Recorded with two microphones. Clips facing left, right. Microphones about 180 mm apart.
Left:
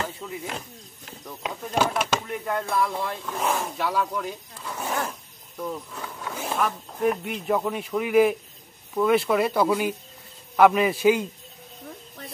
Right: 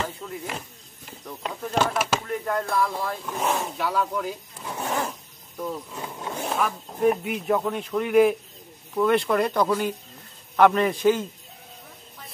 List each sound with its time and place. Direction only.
0.0 s speech: centre (ahead or behind)
5.9 s a sound: 20° right (ahead or behind)
6.3 s a man's voice: centre (ahead or behind)